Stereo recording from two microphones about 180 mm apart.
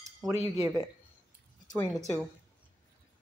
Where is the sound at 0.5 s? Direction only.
15° right (ahead or behind).